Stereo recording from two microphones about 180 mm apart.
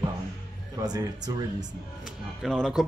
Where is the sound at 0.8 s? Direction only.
20° right (ahead or behind).